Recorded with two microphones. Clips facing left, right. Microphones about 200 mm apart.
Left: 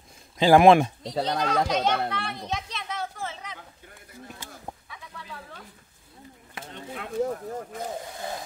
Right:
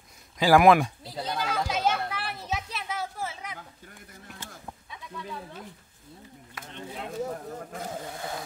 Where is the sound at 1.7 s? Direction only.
5° right (ahead or behind).